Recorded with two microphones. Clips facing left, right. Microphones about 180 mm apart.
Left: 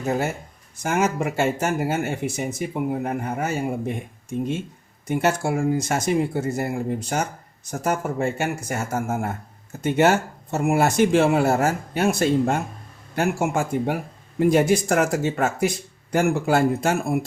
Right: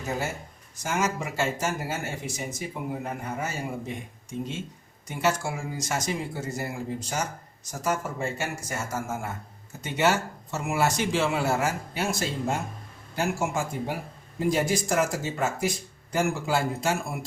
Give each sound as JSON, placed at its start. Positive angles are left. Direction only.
{"t": 0.8, "sound": "speech", "side_deg": 55}